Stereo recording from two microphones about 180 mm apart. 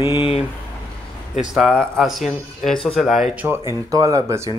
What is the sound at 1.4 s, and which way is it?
Speech, centre (ahead or behind).